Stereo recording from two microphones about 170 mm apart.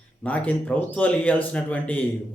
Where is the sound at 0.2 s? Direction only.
10° left (ahead or behind).